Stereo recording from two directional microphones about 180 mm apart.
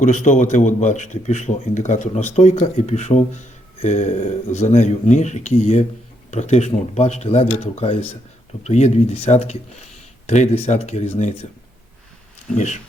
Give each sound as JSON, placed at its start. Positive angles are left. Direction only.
{"t": 0.0, "sound": "a man's voice", "side_deg": 40}
{"t": 12.5, "sound": "a man's voice", "side_deg": 40}